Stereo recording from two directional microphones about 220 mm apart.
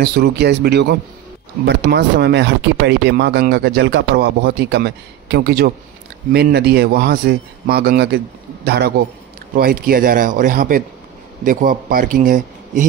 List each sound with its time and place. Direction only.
0.0 s a man's voice: 45° right (ahead or behind)